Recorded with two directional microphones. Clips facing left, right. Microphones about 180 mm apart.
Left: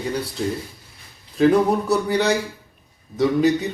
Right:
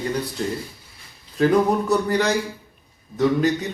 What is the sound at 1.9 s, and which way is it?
Speech, 10° left (ahead or behind).